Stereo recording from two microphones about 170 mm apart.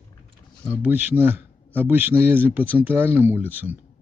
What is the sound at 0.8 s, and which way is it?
Speech, 10° right (ahead or behind).